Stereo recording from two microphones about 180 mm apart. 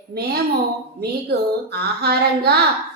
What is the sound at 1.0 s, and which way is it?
A woman's voice, 60° right (ahead or behind).